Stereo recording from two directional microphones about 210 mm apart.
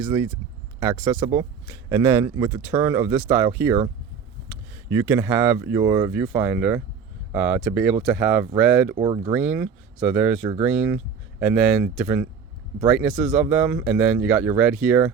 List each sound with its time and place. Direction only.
0.8 s speech: 10° right (ahead or behind)
9.0 s speech: 20° right (ahead or behind)
9.3 s speech: 5° right (ahead or behind)